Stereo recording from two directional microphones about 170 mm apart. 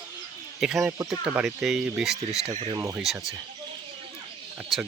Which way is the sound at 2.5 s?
35° right (ahead or behind).